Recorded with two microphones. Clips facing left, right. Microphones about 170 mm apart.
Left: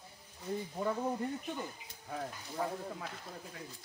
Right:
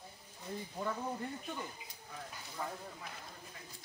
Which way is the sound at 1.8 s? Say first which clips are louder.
Left 8 dB; 65° left (ahead or behind).